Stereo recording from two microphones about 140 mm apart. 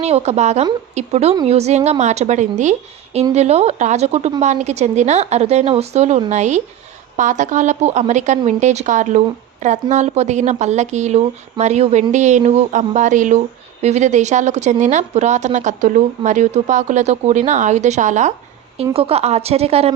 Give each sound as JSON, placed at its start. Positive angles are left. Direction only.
{"t": 0.0, "sound": "a woman's voice", "side_deg": -50}
{"t": 18.9, "sound": "a woman's voice", "side_deg": -45}